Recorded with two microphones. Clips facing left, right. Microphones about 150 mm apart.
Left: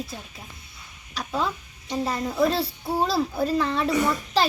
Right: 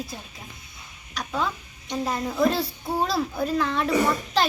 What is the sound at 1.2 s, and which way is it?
A child's voice, centre (ahead or behind).